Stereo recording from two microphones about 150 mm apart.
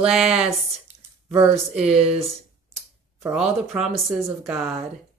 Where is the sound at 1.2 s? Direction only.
20° right (ahead or behind).